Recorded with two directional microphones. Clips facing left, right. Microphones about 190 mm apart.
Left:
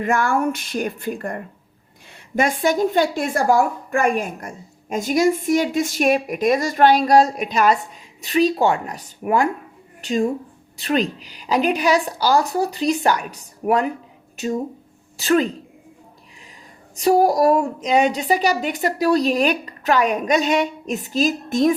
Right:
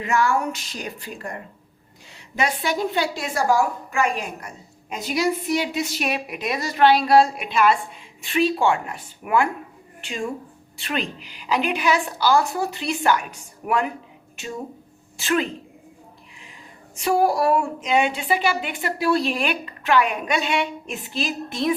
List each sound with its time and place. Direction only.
0.0 s a woman's voice: 55° left (ahead or behind)
16.9 s a woman's voice: 40° left (ahead or behind)